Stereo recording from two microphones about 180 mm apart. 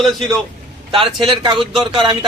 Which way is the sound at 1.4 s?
25° right (ahead or behind).